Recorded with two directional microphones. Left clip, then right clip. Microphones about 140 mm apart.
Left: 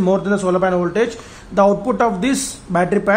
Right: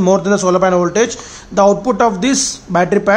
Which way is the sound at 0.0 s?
25° right (ahead or behind).